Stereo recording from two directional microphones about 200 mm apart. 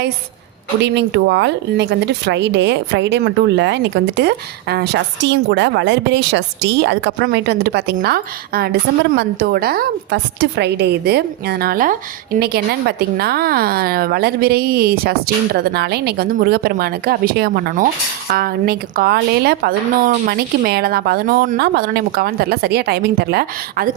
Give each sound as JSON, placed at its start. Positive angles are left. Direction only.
{"t": 0.8, "sound": "speech", "side_deg": -60}